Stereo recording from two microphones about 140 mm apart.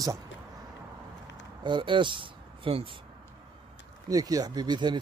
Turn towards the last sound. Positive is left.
turn(degrees=-30)  # may be behind; listen again after turning